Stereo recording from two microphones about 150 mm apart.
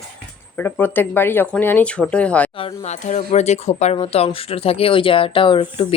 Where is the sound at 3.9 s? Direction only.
40° left (ahead or behind).